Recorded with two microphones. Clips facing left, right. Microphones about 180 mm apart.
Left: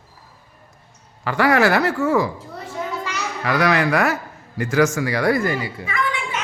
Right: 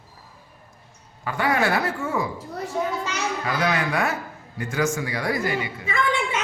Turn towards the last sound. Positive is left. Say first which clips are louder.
# right 1 dB
turn(degrees=-25)  # may be behind; listen again after turning